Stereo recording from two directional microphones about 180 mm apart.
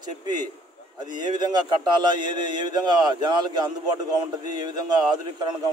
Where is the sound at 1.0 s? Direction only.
25° right (ahead or behind).